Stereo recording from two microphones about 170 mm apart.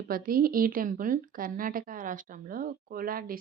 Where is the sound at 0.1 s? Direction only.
60° right (ahead or behind).